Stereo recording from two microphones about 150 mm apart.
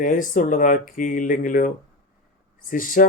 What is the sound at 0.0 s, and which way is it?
Speech, 60° left (ahead or behind).